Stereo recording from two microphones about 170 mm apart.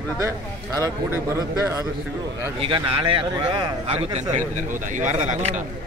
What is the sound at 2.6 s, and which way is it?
A man's voice, 30° right (ahead or behind).